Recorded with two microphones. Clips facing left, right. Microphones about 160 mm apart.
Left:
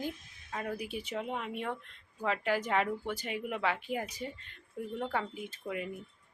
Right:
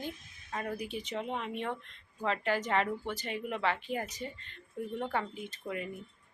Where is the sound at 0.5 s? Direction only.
5° left (ahead or behind).